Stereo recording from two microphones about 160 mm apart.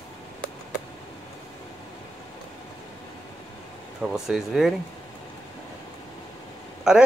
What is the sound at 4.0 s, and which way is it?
Speech, 5° right (ahead or behind).